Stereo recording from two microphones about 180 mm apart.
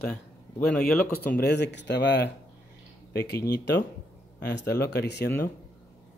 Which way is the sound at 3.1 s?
60° left (ahead or behind).